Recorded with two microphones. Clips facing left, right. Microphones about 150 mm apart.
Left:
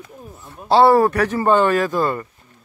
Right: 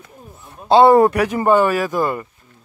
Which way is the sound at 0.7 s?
20° right (ahead or behind).